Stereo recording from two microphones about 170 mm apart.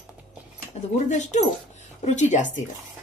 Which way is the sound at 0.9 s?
40° left (ahead or behind).